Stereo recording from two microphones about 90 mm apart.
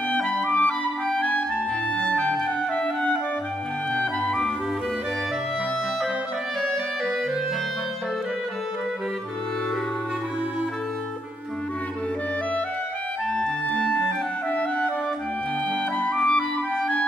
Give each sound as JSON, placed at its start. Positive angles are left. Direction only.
{"t": 0.1, "sound": "clarinet", "side_deg": 10}
{"t": 3.9, "sound": "music", "side_deg": 10}
{"t": 13.3, "sound": "clarinet", "side_deg": 10}
{"t": 16.0, "sound": "clarinet", "side_deg": 15}